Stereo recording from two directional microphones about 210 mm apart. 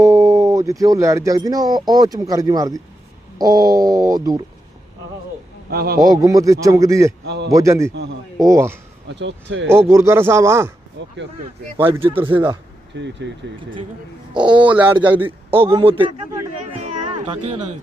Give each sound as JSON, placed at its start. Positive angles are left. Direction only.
{"t": 0.0, "sound": "a man's voice", "side_deg": -15}
{"t": 5.7, "sound": "a man's voice", "side_deg": -50}
{"t": 6.0, "sound": "a man's voice", "side_deg": -15}
{"t": 9.0, "sound": "speech", "side_deg": -60}
{"t": 9.7, "sound": "a man's voice", "side_deg": -15}
{"t": 11.9, "sound": "speech", "side_deg": -25}
{"t": 12.9, "sound": "speech", "side_deg": -55}
{"t": 14.3, "sound": "speech", "side_deg": -20}
{"t": 14.6, "sound": "a man's voice", "side_deg": -5}
{"t": 15.5, "sound": "speech", "side_deg": -25}
{"t": 16.8, "sound": "music", "side_deg": -35}